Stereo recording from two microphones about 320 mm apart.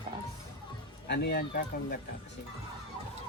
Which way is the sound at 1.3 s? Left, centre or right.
Left.